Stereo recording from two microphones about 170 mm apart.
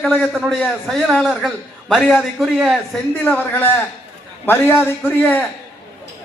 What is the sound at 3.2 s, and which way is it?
A man's voice, 10° left (ahead or behind).